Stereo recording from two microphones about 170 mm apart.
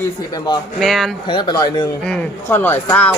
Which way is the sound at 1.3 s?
25° left (ahead or behind).